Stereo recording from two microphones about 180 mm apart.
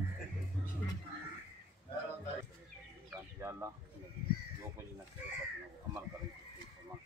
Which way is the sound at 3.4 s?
15° right (ahead or behind).